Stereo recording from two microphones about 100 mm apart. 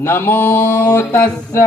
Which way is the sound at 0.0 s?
20° left (ahead or behind).